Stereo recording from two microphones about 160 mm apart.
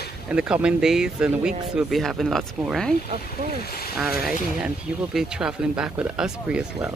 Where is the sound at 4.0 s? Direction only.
Centre (ahead or behind).